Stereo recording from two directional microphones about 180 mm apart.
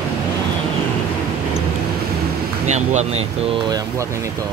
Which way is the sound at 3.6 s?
20° right (ahead or behind).